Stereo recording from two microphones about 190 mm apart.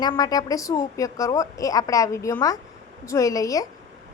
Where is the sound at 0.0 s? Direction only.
20° left (ahead or behind).